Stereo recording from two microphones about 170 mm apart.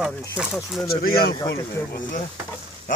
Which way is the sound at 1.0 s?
65° left (ahead or behind).